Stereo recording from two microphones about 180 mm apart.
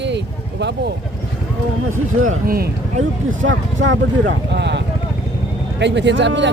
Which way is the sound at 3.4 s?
90° right.